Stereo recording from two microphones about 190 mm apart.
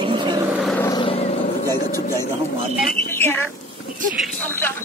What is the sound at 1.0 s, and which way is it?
Vehicle, 30° left (ahead or behind).